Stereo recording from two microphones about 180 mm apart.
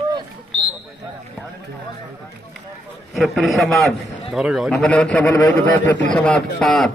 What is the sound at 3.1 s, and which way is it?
A man's voice, centre (ahead or behind).